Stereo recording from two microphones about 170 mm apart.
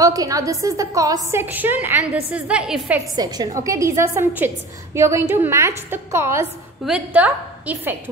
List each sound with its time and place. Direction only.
0.0 s a woman's voice: 20° right (ahead or behind)
3.2 s a woman's voice: 25° right (ahead or behind)